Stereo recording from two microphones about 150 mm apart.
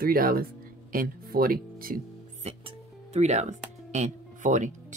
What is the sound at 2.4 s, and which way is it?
Speech, 45° right (ahead or behind).